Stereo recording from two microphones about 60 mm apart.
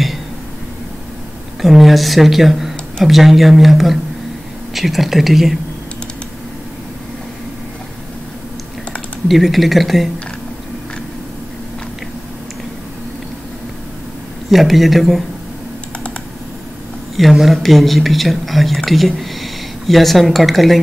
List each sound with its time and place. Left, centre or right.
1.6 s speech: centre
9.3 s speech: centre
14.5 s speech: centre
17.2 s speech: centre